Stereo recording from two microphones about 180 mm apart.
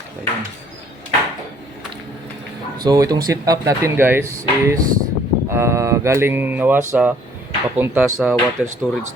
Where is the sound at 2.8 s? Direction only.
20° right (ahead or behind).